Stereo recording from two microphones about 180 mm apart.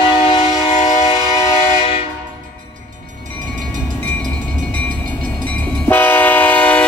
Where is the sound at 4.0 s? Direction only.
5° left (ahead or behind).